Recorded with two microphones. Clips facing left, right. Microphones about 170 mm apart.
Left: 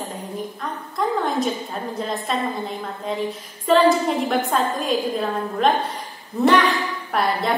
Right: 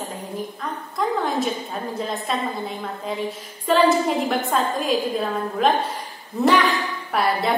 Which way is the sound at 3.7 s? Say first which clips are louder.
Left 1 dB; centre (ahead or behind).